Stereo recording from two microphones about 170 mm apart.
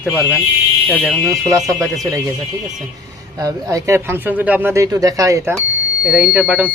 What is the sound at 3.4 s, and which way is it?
Speech, 20° right (ahead or behind).